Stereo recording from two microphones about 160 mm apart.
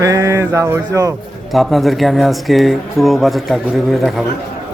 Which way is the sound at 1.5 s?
Centre (ahead or behind).